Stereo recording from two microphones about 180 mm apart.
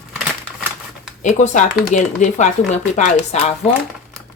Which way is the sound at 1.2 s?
45° left (ahead or behind).